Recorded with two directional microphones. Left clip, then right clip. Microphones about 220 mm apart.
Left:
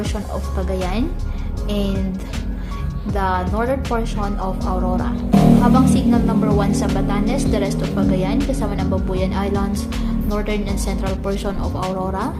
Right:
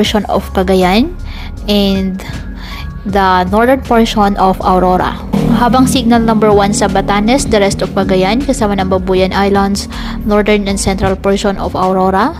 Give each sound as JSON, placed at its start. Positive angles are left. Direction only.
{"t": 0.0, "sound": "speech", "side_deg": -40}
{"t": 3.2, "sound": "speech", "side_deg": -40}